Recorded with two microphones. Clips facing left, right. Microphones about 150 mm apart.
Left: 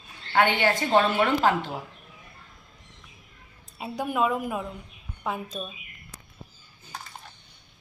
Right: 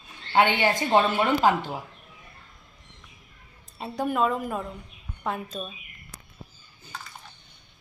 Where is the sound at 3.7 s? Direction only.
5° left (ahead or behind).